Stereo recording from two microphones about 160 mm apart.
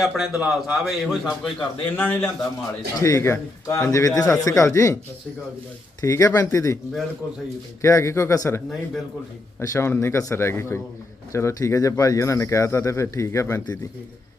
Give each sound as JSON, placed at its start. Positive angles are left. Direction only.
{"t": 0.0, "sound": "a man's voice", "side_deg": 0}
{"t": 1.5, "sound": "a man's voice", "side_deg": 15}
{"t": 6.0, "sound": "speech", "side_deg": 20}
{"t": 7.8, "sound": "a man's voice", "side_deg": 20}